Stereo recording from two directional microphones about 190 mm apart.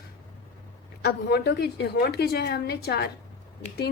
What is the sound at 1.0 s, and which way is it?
A woman's voice, 60° left (ahead or behind).